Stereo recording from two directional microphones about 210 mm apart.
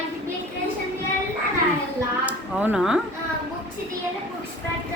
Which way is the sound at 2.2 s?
5° right (ahead or behind).